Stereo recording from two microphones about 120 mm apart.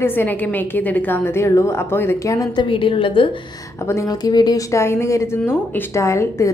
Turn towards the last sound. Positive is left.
turn(degrees=25)  # may be behind; listen again after turning